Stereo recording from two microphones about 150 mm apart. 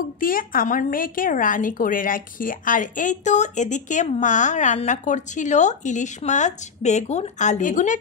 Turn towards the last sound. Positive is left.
turn(degrees=60)  # may be behind; listen again after turning